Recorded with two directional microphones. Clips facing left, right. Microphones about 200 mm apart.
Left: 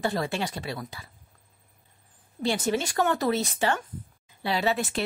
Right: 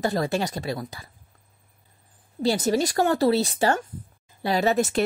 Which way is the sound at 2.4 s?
35° right (ahead or behind).